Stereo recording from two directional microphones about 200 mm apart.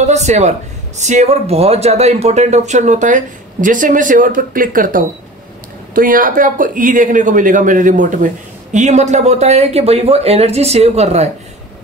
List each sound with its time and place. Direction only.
0.0 s speech: 35° right (ahead or behind)